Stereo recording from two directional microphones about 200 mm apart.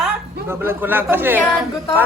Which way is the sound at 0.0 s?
10° right (ahead or behind).